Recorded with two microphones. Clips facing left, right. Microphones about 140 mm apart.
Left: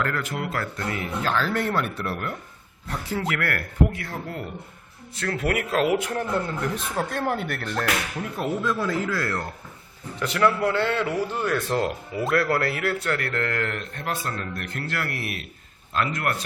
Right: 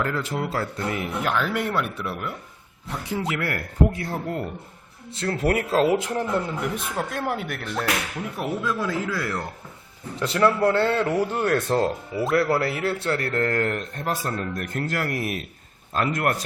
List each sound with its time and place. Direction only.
0.0 s speech: 25° right (ahead or behind); by 2.3 s centre (ahead or behind)
2.8 s speech: 15° right (ahead or behind)
3.9 s a man's voice: 35° right (ahead or behind)
6.9 s speech: 5° right (ahead or behind)
10.2 s a man's voice: 30° right (ahead or behind)
11.3 s speech: 55° right (ahead or behind)
11.7 s a man's voice: 30° right (ahead or behind)